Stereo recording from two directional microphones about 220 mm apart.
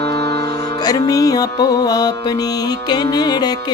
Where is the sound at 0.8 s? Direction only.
15° left (ahead or behind).